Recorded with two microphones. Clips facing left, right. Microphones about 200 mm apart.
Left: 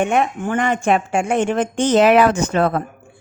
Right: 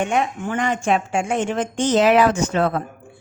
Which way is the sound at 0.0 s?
55° left (ahead or behind).